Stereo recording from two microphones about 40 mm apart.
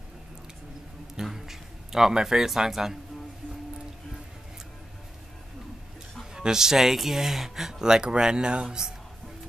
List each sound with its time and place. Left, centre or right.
1.2 s a man's voice: centre
6.3 s speech: centre
7.9 s speech: right